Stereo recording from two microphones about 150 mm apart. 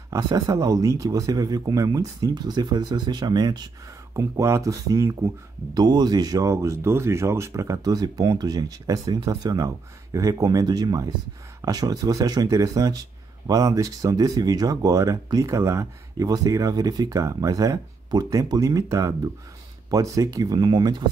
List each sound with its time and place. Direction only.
0.1 s speech: 25° right (ahead or behind)